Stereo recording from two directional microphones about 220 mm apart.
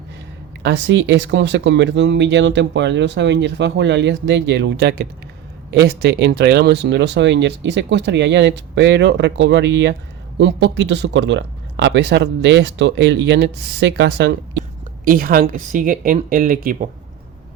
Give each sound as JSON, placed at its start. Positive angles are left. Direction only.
{"t": 0.6, "sound": "speech", "side_deg": -55}
{"t": 15.0, "sound": "speech", "side_deg": -40}